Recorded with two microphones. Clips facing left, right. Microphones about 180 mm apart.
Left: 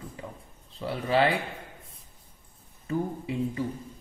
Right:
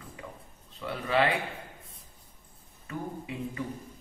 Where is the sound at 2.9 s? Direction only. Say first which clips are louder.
Left 7 dB; 30° left (ahead or behind).